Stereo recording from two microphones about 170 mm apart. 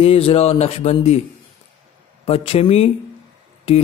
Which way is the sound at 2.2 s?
35° left (ahead or behind).